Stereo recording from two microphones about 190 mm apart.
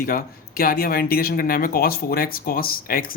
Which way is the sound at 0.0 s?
50° left (ahead or behind).